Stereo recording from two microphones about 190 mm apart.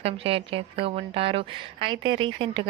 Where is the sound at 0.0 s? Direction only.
30° right (ahead or behind).